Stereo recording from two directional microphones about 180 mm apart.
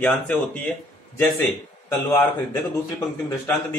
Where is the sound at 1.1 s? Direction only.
15° left (ahead or behind).